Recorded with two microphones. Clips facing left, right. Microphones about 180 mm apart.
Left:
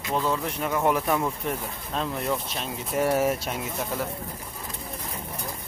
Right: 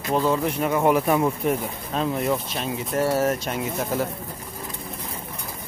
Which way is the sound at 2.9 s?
10° left (ahead or behind).